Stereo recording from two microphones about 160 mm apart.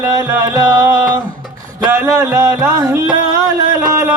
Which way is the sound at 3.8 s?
20° right (ahead or behind).